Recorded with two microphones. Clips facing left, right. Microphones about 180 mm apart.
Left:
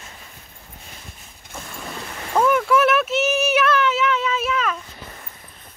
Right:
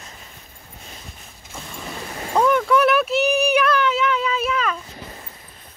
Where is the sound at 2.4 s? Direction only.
5° left (ahead or behind).